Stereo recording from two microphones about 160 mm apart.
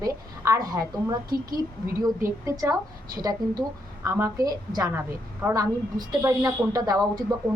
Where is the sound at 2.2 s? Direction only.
20° right (ahead or behind).